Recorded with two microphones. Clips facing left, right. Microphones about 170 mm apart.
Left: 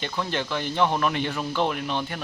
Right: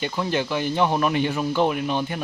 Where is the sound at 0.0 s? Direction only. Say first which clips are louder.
Right 4 dB; 10° right (ahead or behind).